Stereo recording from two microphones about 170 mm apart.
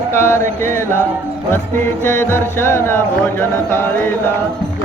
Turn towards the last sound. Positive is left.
turn(degrees=15)  # may be behind; listen again after turning